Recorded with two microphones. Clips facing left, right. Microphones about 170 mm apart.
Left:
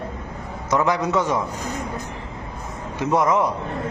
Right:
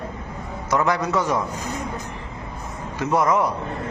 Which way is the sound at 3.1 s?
20° left (ahead or behind).